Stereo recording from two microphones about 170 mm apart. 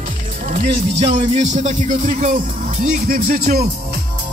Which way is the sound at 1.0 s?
40° right (ahead or behind).